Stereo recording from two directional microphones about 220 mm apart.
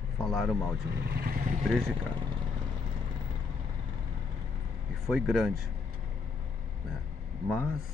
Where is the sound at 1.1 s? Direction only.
45° right (ahead or behind).